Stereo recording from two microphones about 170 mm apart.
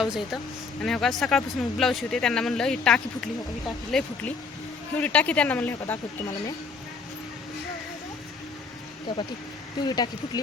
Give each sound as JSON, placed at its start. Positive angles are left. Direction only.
{"t": 0.0, "sound": "speech", "side_deg": 0}
{"t": 9.8, "sound": "speech", "side_deg": 25}